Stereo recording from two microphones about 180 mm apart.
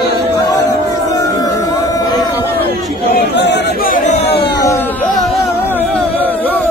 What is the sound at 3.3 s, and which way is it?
Chatter, 75° left (ahead or behind).